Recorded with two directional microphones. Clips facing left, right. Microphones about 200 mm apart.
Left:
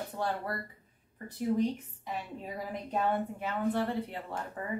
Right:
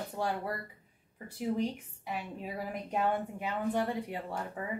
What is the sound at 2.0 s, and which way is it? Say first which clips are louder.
A woman's voice: even; 10° right (ahead or behind).